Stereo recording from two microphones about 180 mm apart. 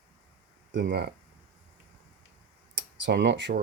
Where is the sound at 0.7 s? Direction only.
70° right (ahead or behind).